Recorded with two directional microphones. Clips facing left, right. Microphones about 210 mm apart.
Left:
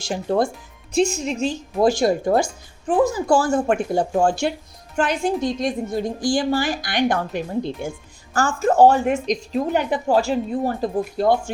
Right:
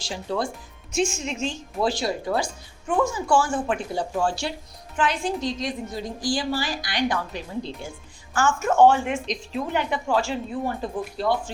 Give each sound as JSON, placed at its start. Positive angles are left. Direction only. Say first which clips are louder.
{"t": 0.1, "sound": "a woman's voice", "louder": "left 7 dB", "side_deg": 50}
{"t": 0.9, "sound": "a woman's voice", "louder": "left 5 dB", "side_deg": 35}
{"t": 2.8, "sound": "a woman's voice", "louder": "left 5 dB", "side_deg": 35}